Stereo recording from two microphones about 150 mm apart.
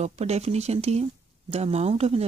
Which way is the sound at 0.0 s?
45° right (ahead or behind).